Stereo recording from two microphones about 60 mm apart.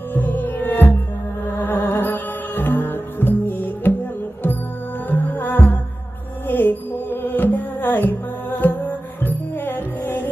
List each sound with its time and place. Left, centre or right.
0.1 s music: left
5.1 s music: left